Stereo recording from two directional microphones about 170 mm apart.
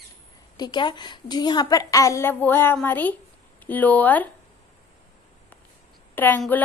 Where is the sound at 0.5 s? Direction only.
25° left (ahead or behind); by 4.3 s 10° left (ahead or behind).